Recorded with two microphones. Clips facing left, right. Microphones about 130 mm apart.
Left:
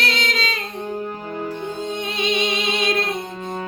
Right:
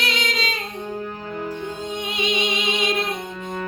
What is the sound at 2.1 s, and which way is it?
Music, 15° right (ahead or behind).